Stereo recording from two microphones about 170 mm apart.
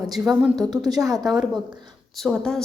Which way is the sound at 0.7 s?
25° right (ahead or behind).